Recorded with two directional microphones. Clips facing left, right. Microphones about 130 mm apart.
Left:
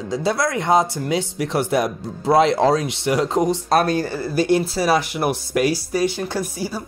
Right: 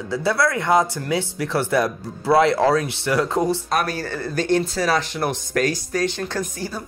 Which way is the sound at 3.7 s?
30° left (ahead or behind).